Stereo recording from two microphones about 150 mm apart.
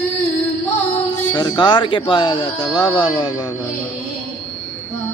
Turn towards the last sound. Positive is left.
turn(degrees=30)  # may be behind; listen again after turning